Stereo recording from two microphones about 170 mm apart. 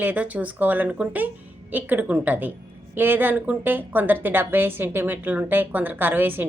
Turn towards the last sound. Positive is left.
turn(degrees=-10)  # may be behind; listen again after turning